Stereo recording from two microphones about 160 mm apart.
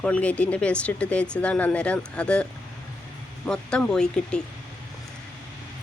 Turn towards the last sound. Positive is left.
turn(degrees=5)  # may be behind; listen again after turning